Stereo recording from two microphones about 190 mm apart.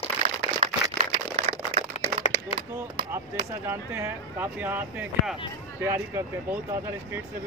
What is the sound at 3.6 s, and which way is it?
Speech, 10° right (ahead or behind).